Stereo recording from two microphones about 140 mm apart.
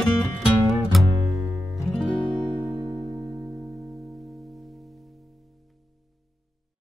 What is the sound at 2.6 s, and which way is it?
Music, 10° right (ahead or behind).